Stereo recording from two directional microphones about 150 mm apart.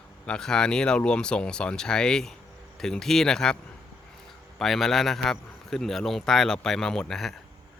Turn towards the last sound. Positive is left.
turn(degrees=5)  # may be behind; listen again after turning